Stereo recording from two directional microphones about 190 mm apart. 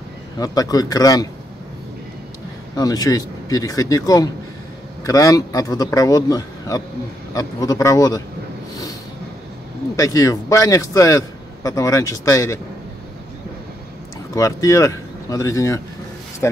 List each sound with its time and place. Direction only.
0.4 s speech: 20° left (ahead or behind)
2.7 s a man's voice: 20° left (ahead or behind)
9.9 s a man's voice: 15° left (ahead or behind)
14.3 s speech: 15° left (ahead or behind)